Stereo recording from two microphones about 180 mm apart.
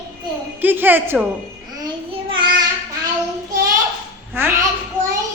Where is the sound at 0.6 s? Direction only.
10° right (ahead or behind).